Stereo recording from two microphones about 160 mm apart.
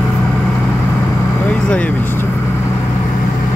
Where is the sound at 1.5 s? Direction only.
10° left (ahead or behind).